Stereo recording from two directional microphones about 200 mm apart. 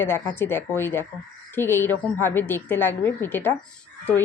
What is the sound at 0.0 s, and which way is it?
Speech, 10° left (ahead or behind).